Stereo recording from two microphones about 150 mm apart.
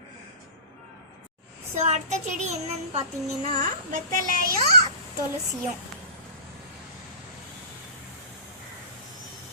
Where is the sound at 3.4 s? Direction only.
55° right (ahead or behind).